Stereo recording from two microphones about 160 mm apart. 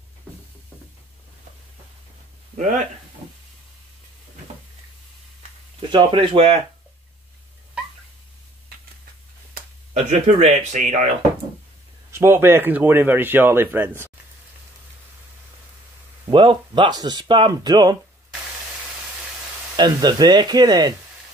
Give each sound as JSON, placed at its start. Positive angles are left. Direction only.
{"t": 2.5, "sound": "speech", "side_deg": -50}
{"t": 5.8, "sound": "speech", "side_deg": -30}
{"t": 9.9, "sound": "speech", "side_deg": -45}
{"t": 12.1, "sound": "speech", "side_deg": -15}
{"t": 16.3, "sound": "speech", "side_deg": -30}
{"t": 19.8, "sound": "speech", "side_deg": -25}